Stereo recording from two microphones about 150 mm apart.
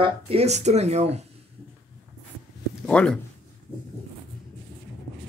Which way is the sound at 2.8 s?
5° left (ahead or behind).